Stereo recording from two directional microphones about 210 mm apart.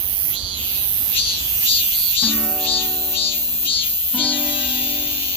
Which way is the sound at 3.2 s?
25° left (ahead or behind).